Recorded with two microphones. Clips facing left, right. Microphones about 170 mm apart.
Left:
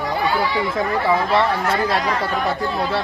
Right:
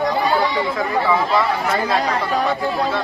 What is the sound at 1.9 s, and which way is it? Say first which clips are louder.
Speech: right 1 dB; 35° right (ahead or behind).